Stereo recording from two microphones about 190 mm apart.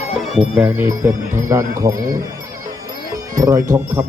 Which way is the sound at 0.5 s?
10° right (ahead or behind).